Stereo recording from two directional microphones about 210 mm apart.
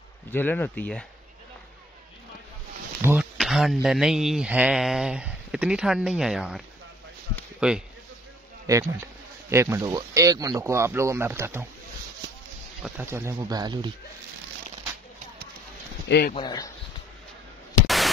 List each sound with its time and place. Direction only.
0.3 s speech: 10° left (ahead or behind)
3.0 s speech: 5° right (ahead or behind)
7.6 s speech: 5° right (ahead or behind)
8.6 s speech: 15° right (ahead or behind)
12.8 s speech: 10° right (ahead or behind)
16.1 s speech: 50° left (ahead or behind)
16.3 s speech: 20° left (ahead or behind)
17.8 s a sound: centre (ahead or behind)